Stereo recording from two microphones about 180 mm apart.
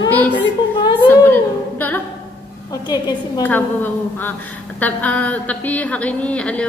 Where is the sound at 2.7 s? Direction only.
20° left (ahead or behind).